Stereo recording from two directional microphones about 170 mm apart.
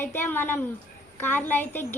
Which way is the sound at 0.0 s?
10° left (ahead or behind).